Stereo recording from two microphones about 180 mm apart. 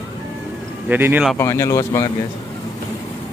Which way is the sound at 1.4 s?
15° left (ahead or behind).